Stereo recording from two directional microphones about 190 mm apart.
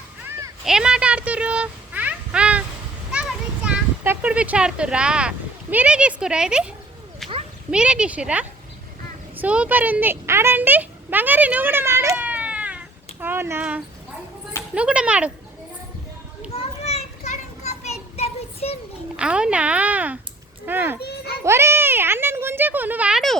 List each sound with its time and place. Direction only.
0.3 s a sound: 15° right (ahead or behind)
5.7 s speech: 5° right (ahead or behind)
7.2 s a sound: centre (ahead or behind)
7.7 s a child's voice: 5° right (ahead or behind)
16.6 s children playing: 35° left (ahead or behind)
19.1 s a child's voice: 5° right (ahead or behind)
21.0 s children playing: 55° left (ahead or behind)
21.4 s a child's voice: 15° right (ahead or behind)